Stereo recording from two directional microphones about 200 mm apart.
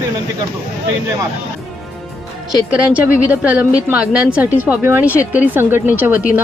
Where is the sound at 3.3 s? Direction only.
5° right (ahead or behind).